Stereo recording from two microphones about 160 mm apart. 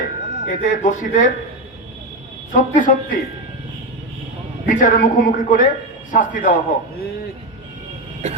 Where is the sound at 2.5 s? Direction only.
55° left (ahead or behind).